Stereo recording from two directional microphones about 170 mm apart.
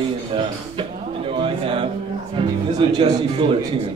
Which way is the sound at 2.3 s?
30° right (ahead or behind).